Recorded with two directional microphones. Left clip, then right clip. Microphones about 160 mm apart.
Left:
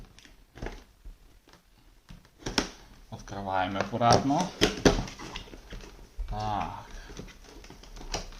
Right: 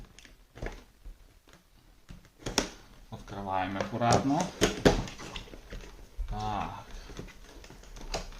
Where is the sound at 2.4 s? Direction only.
Centre (ahead or behind).